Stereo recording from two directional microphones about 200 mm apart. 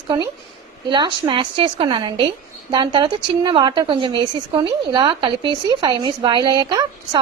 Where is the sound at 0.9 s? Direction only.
25° right (ahead or behind).